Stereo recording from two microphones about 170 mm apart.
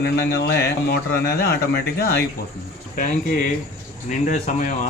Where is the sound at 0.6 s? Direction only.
70° left (ahead or behind).